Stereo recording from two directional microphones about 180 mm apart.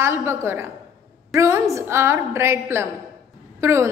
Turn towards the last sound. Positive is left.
turn(degrees=-15)  # may be behind; listen again after turning